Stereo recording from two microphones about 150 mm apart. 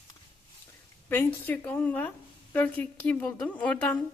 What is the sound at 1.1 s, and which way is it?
A woman's voice, 10° left (ahead or behind).